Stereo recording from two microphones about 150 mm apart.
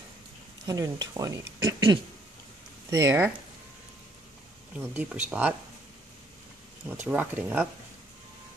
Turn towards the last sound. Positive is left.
turn(degrees=-10)  # may be behind; listen again after turning